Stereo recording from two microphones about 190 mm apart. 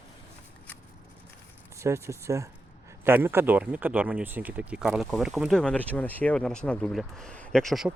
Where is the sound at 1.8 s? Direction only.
15° right (ahead or behind).